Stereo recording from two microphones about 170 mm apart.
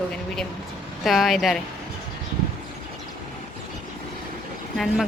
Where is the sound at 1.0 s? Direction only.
Centre (ahead or behind).